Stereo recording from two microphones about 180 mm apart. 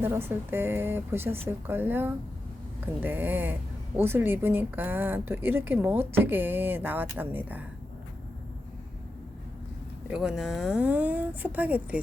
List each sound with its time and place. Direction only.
0.0 s a woman's voice: 15° right (ahead or behind)
10.1 s a woman's voice: 5° right (ahead or behind)